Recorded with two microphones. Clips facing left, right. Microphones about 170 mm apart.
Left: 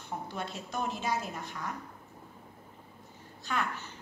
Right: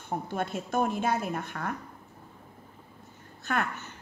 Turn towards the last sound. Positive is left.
turn(degrees=-55)  # may be behind; listen again after turning